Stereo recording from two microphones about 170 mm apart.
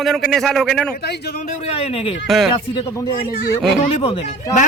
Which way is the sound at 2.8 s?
20° left (ahead or behind).